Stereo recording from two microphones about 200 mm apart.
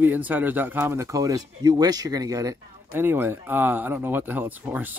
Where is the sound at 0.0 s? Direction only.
10° right (ahead or behind).